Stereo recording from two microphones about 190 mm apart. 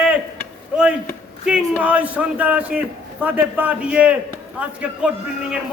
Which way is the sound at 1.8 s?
5° right (ahead or behind).